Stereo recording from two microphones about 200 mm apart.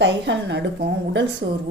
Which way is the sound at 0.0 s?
60° right (ahead or behind).